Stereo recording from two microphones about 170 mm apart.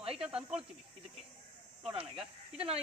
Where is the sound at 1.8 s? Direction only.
5° right (ahead or behind).